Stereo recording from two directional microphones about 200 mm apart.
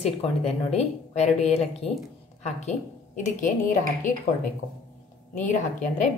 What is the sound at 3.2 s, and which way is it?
Speech, 40° left (ahead or behind).